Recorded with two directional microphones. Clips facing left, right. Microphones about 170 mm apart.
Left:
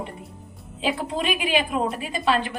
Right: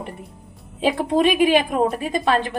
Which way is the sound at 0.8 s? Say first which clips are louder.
Right 7 dB; 45° right (ahead or behind).